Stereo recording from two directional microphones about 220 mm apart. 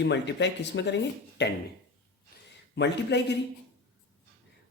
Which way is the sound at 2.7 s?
50° left (ahead or behind).